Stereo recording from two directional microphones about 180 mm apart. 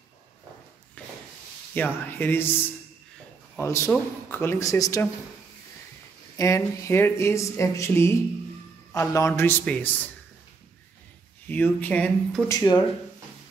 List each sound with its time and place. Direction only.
1.0 s rub: 5° left (ahead or behind)
2.0 s speech: 10° left (ahead or behind)
6.3 s speech: 15° left (ahead or behind)
11.4 s speech: 10° left (ahead or behind)
12.4 s speech: 20° left (ahead or behind)